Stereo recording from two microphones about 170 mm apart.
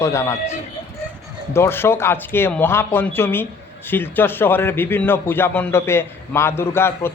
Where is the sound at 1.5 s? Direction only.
15° left (ahead or behind).